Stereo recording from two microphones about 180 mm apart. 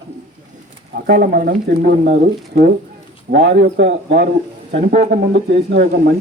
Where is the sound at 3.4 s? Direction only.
80° right.